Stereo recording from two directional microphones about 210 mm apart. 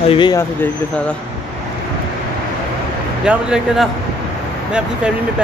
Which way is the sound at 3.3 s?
5° right (ahead or behind).